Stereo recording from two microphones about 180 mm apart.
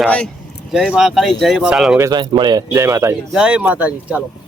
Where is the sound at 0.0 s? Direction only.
5° left (ahead or behind).